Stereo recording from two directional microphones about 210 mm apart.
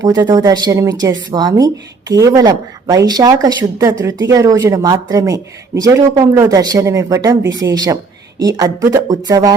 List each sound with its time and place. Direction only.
0.0 s speech: 20° right (ahead or behind)